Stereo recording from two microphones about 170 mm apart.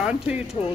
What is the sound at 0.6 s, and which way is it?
Speech, 25° left (ahead or behind).